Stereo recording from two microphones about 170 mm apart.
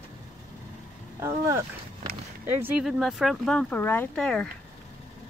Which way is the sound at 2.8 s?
Centre (ahead or behind).